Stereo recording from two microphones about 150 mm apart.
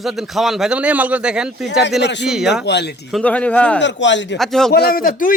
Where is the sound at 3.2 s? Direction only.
10° left (ahead or behind).